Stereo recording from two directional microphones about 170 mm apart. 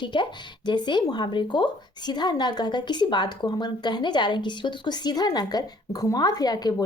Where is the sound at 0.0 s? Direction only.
30° left (ahead or behind).